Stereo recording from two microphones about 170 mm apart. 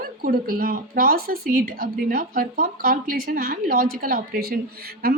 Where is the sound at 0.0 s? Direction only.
60° right (ahead or behind).